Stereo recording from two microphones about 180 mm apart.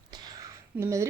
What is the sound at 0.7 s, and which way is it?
Speech, 15° right (ahead or behind).